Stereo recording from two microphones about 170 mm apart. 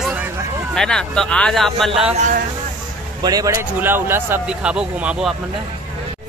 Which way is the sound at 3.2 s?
20° right (ahead or behind).